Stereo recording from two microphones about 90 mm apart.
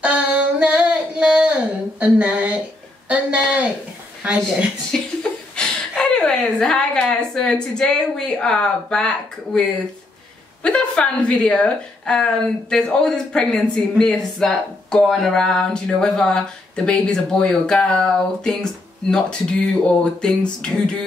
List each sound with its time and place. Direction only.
0.0 s female singing: 15° right (ahead or behind)
2.0 s a sound: 15° right (ahead or behind)
5.6 s a woman's voice: 10° left (ahead or behind)